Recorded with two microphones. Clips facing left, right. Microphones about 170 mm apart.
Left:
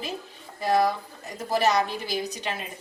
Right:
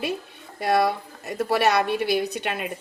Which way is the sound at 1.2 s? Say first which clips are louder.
Right 3 dB; 65° right (ahead or behind).